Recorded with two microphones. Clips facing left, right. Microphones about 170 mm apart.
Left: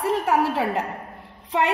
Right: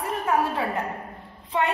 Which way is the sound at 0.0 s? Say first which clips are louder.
Left 3 dB; 90° left.